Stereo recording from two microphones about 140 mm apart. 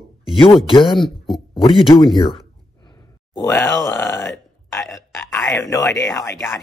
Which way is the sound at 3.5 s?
20° left (ahead or behind).